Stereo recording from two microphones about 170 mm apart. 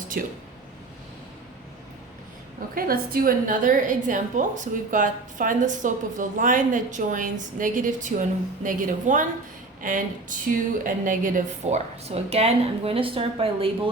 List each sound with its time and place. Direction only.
0.1 s speech: 55° right (ahead or behind)
2.6 s a woman's voice: 60° right (ahead or behind); by 13.9 s 35° right (ahead or behind)